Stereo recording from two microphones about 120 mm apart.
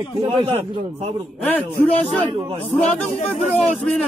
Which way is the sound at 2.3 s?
35° right (ahead or behind).